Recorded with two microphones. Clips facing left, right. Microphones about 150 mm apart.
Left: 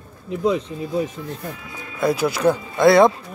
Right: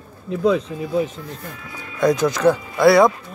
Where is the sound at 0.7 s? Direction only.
90° right.